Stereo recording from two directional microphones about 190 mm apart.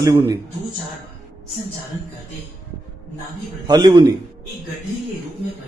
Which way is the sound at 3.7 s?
20° right (ahead or behind).